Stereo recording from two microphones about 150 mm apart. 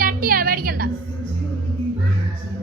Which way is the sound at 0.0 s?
70° right (ahead or behind).